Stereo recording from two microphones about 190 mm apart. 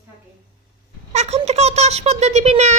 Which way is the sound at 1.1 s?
40° right (ahead or behind).